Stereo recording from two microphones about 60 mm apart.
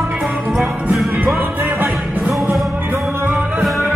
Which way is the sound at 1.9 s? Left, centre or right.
Centre.